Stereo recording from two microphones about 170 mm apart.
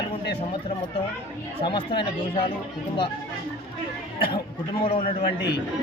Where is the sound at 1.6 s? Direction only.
30° left (ahead or behind).